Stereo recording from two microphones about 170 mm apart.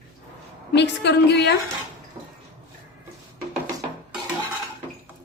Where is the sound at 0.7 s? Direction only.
90° left.